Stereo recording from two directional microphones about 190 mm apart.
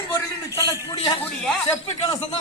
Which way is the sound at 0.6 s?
20° left (ahead or behind).